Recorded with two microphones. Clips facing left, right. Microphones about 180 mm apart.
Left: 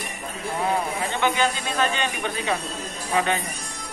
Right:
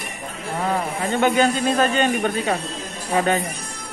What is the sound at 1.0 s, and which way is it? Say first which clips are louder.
A man's voice: right 8 dB; 45° right (ahead or behind).